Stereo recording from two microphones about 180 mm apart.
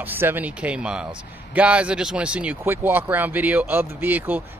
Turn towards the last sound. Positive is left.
turn(degrees=-10)  # may be behind; listen again after turning